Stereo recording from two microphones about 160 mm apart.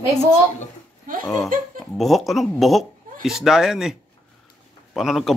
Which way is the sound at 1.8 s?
Centre (ahead or behind).